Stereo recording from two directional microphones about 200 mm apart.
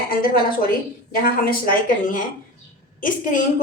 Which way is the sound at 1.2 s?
45° left (ahead or behind).